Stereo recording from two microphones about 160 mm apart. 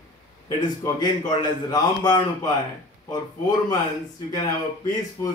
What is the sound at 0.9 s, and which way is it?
A man's voice, 25° left (ahead or behind).